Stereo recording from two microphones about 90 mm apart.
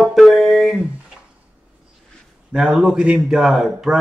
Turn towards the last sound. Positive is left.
turn(degrees=-5)  # may be behind; listen again after turning